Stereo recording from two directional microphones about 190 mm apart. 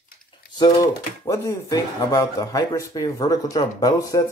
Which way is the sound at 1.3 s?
15° left (ahead or behind).